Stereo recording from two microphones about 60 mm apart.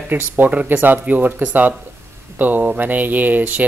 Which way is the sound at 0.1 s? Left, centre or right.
Right.